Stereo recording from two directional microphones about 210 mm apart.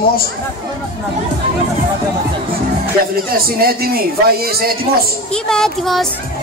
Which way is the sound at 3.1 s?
45° right (ahead or behind).